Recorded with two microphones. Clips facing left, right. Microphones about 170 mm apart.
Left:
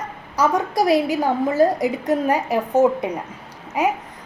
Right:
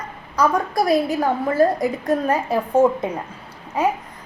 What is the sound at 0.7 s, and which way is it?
Speech, 90° left.